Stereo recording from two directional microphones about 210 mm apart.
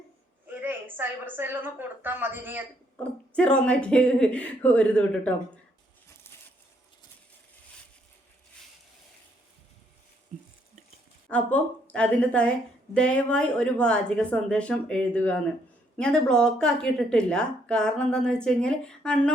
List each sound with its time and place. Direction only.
0.4 s a woman's voice: 10° right (ahead or behind)
3.0 s a woman's voice: 5° left (ahead or behind)
10.3 s a sound: 35° right (ahead or behind)
11.3 s a woman's voice: 5° left (ahead or behind)